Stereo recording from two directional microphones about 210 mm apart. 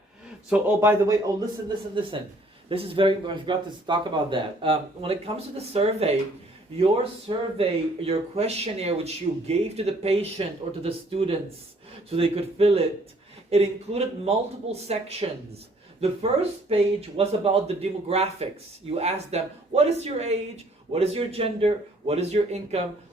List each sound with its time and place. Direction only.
0.5 s speech: 10° right (ahead or behind)
2.0 s speech: 25° right (ahead or behind)